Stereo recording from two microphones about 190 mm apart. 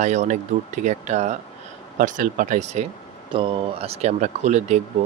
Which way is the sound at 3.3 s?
25° right (ahead or behind).